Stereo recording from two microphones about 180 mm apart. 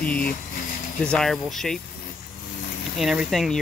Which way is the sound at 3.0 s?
Centre (ahead or behind).